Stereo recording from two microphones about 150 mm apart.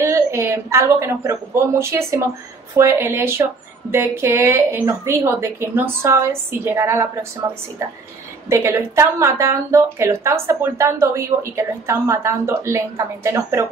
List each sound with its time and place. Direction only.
0.0 s a woman's voice: 20° right (ahead or behind)
8.5 s a woman's voice: 20° right (ahead or behind)